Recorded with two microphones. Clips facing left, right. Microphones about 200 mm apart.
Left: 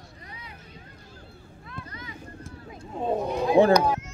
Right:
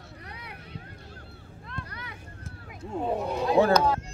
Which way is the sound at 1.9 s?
65° right (ahead or behind).